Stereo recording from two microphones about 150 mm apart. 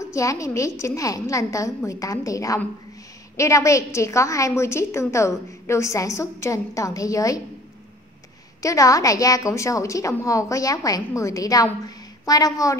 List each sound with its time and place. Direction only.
0.0 s a woman's voice: 20° left (ahead or behind)
8.6 s a woman's voice: 20° left (ahead or behind)